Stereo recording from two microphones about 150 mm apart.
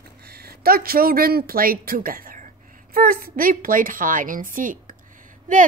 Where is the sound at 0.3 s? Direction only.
90° right.